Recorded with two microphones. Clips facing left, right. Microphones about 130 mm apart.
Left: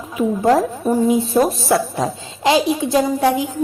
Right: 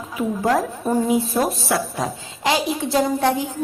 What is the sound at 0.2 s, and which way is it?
A woman's voice, 25° left (ahead or behind).